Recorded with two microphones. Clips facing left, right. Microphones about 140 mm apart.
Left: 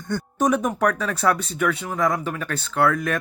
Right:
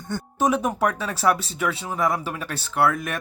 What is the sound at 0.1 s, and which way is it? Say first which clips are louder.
Speech: left 1 dB; 25° right (ahead or behind).